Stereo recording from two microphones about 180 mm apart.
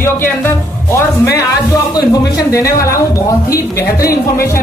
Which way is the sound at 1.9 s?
20° left (ahead or behind).